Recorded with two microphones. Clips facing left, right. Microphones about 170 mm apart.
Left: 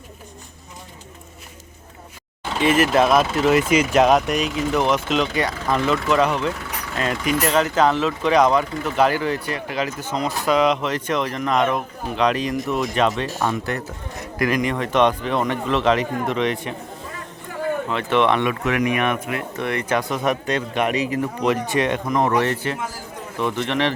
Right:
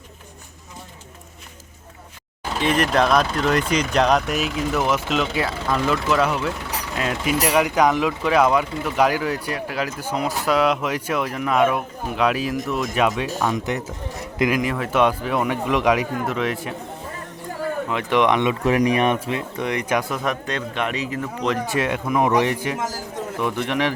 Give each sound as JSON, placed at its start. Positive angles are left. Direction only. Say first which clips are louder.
{"t": 2.6, "sound": "speech", "louder": "left 3 dB", "side_deg": 5}
{"t": 14.5, "sound": "speech", "louder": "left 1 dB", "side_deg": -5}
{"t": 17.8, "sound": "speech", "louder": "right 1 dB", "side_deg": -15}
{"t": 18.6, "sound": "speech", "louder": "right 3 dB", "side_deg": -35}
{"t": 19.5, "sound": "speech", "louder": "left 1 dB", "side_deg": -15}
{"t": 20.2, "sound": "a man's voice", "louder": "left 3 dB", "side_deg": 10}
{"t": 21.7, "sound": "speech", "louder": "left 1 dB", "side_deg": -5}